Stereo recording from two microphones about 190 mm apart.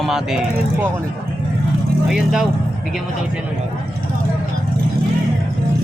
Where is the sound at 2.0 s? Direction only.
Centre (ahead or behind).